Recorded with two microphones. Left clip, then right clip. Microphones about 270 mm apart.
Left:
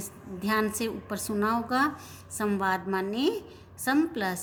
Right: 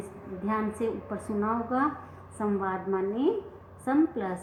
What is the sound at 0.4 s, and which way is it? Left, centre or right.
A woman's voice, left.